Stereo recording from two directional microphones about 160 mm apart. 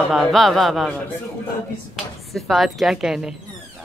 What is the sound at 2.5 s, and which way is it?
Speech, centre (ahead or behind).